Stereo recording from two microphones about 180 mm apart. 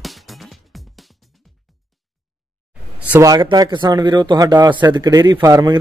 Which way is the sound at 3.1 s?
20° right (ahead or behind).